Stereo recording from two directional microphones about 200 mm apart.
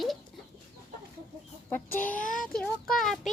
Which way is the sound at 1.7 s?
10° left (ahead or behind).